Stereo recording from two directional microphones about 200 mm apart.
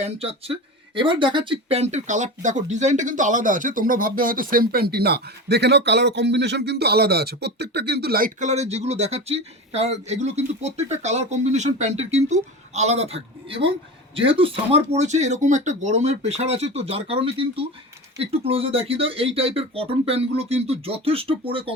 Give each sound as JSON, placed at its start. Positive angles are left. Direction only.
{"t": 0.0, "sound": "speech", "side_deg": -30}